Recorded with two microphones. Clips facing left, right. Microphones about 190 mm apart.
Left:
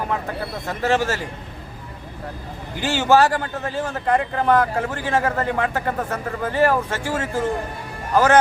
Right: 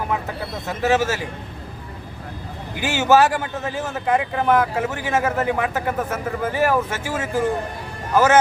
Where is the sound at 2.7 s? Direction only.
15° right (ahead or behind).